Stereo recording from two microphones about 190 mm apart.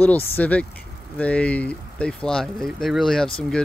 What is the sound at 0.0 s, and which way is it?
Speech, 10° left (ahead or behind).